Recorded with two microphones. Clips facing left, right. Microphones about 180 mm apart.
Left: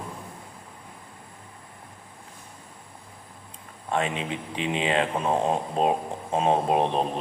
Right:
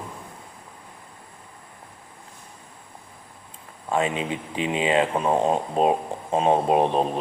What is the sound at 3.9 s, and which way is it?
A man's voice, centre (ahead or behind).